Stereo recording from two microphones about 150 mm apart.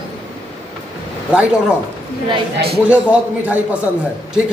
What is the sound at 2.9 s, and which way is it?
A man's voice, 10° right (ahead or behind).